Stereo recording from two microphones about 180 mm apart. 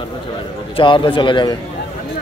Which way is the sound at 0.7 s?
25° left (ahead or behind).